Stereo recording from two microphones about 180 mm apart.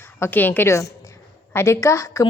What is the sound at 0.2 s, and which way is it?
A woman's voice, 10° left (ahead or behind).